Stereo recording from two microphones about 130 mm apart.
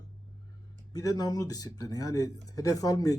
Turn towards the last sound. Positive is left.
turn(degrees=25)  # may be behind; listen again after turning